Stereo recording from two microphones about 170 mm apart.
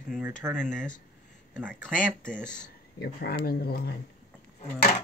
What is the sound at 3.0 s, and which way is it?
Speech, 65° left (ahead or behind).